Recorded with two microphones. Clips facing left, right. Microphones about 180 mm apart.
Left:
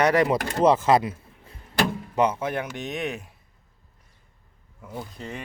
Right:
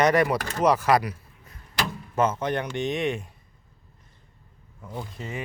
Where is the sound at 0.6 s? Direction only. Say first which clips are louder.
Left 2 dB; 25° left (ahead or behind).